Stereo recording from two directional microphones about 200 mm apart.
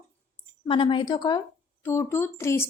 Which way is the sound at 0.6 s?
25° left (ahead or behind).